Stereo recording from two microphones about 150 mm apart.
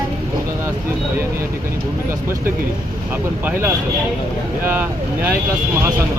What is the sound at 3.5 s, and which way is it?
Speech, 15° right (ahead or behind).